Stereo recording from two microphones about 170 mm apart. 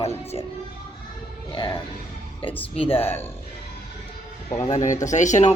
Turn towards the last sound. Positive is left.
turn(degrees=45)  # may be behind; listen again after turning